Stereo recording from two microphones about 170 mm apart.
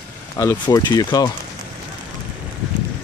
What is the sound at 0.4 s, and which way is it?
Speech, 15° left (ahead or behind).